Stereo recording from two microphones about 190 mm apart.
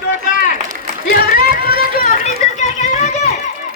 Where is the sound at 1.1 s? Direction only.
50° left (ahead or behind).